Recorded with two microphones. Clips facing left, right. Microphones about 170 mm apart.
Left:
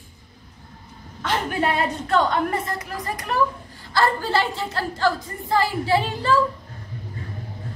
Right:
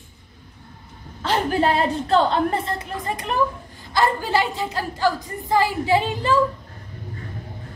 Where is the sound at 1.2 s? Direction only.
30° right (ahead or behind).